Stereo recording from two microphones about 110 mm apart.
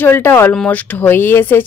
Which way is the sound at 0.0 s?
20° left (ahead or behind).